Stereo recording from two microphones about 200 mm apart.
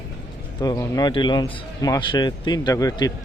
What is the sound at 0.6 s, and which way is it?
A man's voice, 20° left (ahead or behind).